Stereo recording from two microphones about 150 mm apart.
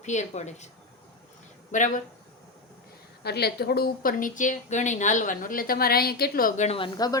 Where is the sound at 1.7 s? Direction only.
55° left (ahead or behind).